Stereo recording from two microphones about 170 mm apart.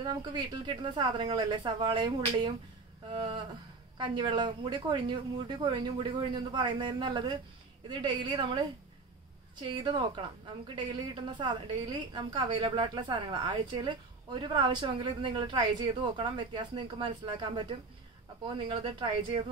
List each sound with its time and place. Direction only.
0.0 s a woman's voice: 25° right (ahead or behind)
9.8 s a woman's voice: 25° right (ahead or behind)